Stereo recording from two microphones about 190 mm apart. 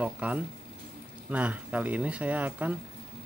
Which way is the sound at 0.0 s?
5° right (ahead or behind).